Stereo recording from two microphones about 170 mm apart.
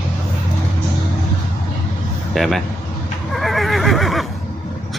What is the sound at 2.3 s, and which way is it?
Speech, centre (ahead or behind).